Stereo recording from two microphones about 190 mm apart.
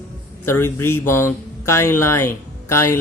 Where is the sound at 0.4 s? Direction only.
10° left (ahead or behind).